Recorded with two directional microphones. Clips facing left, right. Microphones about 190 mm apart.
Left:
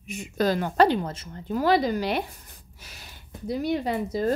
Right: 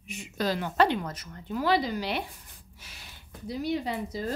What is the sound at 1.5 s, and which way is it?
Speech, 45° left (ahead or behind).